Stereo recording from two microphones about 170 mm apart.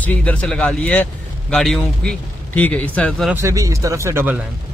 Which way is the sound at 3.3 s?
15° right (ahead or behind).